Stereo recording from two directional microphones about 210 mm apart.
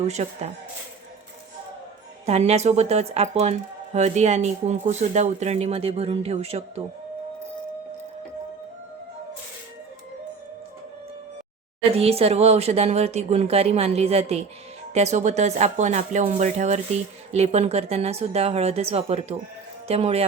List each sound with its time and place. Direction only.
0.2 s speech: 30° right (ahead or behind)
2.2 s speech: 30° right (ahead or behind)
11.9 s speech: 30° right (ahead or behind)